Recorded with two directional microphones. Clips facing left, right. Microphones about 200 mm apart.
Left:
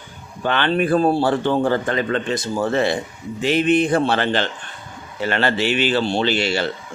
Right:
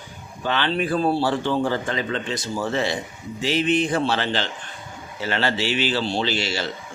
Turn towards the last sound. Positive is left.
turn(degrees=60)  # may be behind; listen again after turning